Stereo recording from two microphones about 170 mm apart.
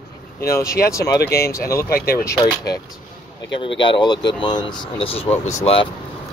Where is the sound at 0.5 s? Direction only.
15° left (ahead or behind).